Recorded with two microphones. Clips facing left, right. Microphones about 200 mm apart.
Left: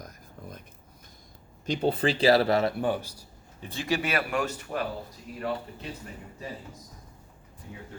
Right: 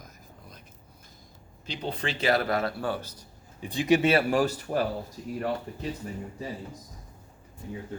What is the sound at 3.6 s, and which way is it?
Speech, 15° right (ahead or behind).